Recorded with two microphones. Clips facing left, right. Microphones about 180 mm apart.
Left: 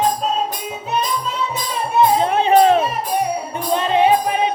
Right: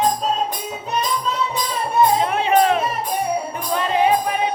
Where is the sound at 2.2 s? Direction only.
30° left (ahead or behind).